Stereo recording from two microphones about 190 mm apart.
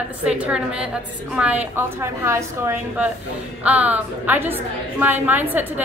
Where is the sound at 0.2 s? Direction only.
5° right (ahead or behind).